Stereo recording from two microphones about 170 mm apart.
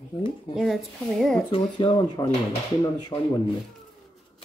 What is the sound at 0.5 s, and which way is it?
Speech, centre (ahead or behind).